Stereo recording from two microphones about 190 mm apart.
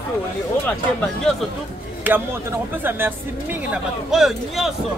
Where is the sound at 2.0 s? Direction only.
10° right (ahead or behind).